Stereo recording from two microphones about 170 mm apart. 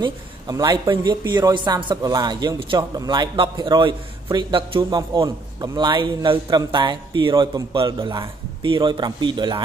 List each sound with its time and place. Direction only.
0.0 s speech: 25° right (ahead or behind)